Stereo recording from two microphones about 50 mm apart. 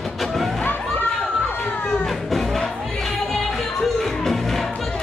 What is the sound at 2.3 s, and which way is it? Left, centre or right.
Music, centre.